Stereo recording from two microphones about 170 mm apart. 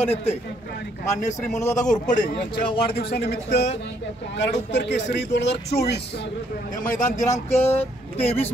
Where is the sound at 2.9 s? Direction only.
75° left (ahead or behind).